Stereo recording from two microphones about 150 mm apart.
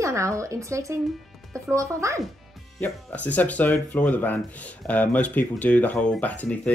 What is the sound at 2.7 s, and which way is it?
Speech, 10° left (ahead or behind).